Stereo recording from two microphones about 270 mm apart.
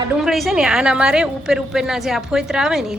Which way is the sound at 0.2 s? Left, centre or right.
Centre.